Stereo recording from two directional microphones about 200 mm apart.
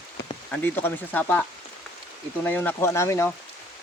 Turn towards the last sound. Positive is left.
turn(degrees=15)  # may be behind; listen again after turning